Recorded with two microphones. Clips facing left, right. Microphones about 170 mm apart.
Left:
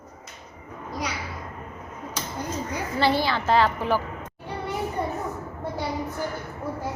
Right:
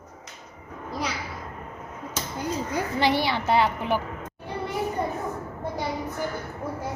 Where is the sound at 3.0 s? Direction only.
15° right (ahead or behind).